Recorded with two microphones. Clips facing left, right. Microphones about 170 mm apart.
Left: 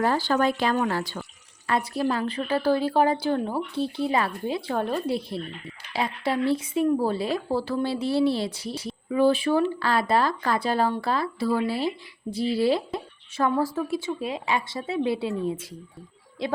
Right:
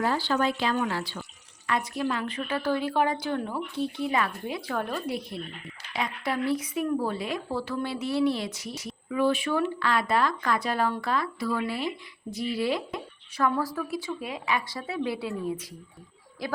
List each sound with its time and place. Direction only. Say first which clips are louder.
0.0 s speech: left 3 dB; 45° left (ahead or behind)
1.6 s speech: left 3 dB; 35° left (ahead or behind)